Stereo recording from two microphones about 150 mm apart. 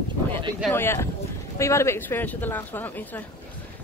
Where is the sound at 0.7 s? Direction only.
15° left (ahead or behind).